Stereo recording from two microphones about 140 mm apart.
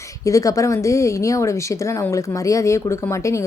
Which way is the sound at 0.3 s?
25° left (ahead or behind).